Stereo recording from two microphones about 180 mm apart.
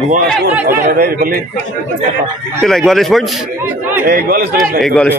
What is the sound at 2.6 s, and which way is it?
A man's voice, centre (ahead or behind).